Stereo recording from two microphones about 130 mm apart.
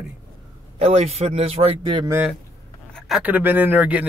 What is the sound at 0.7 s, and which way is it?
A man's voice, 55° right (ahead or behind).